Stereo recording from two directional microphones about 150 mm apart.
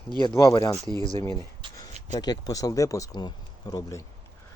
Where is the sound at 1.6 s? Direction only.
30° right (ahead or behind).